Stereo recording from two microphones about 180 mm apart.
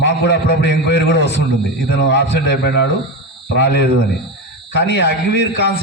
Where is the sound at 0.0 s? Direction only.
70° left (ahead or behind).